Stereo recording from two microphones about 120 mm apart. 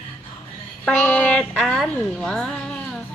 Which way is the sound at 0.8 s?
10° left (ahead or behind).